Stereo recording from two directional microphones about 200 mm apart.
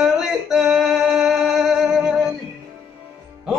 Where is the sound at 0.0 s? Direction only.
Centre (ahead or behind).